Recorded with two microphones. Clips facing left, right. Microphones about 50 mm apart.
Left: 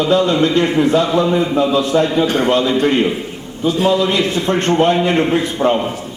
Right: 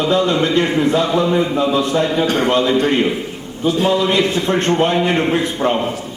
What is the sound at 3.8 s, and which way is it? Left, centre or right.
Speech, centre.